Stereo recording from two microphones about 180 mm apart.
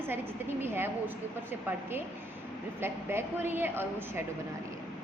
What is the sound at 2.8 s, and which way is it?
A woman's voice, 10° right (ahead or behind).